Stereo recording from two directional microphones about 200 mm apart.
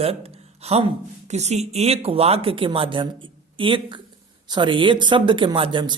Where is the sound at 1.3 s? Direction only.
35° right (ahead or behind).